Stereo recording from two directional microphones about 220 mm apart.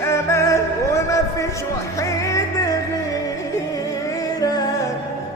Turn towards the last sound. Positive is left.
turn(degrees=15)  # may be behind; listen again after turning